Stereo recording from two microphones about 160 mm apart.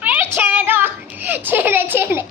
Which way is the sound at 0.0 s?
10° right (ahead or behind).